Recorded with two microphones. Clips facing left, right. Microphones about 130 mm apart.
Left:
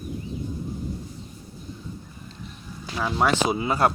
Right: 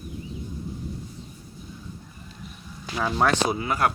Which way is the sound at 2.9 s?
Centre (ahead or behind).